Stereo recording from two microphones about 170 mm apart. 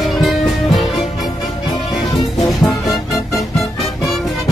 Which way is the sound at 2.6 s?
Centre (ahead or behind).